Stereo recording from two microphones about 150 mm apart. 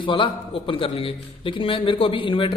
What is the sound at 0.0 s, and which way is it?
A man's voice, 35° left (ahead or behind).